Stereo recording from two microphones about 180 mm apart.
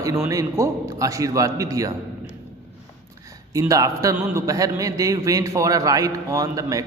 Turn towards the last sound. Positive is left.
turn(degrees=-20)  # may be behind; listen again after turning